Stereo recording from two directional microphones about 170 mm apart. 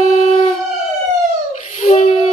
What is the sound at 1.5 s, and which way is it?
Baby cry, 50° left (ahead or behind).